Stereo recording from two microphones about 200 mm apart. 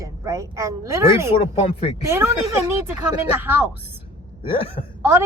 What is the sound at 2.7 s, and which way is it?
A woman's voice, 10° right (ahead or behind).